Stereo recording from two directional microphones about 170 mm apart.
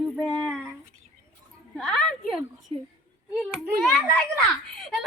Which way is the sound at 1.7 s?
5° left (ahead or behind).